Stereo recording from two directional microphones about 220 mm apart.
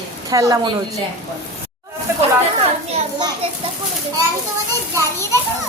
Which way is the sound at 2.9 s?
20° right (ahead or behind).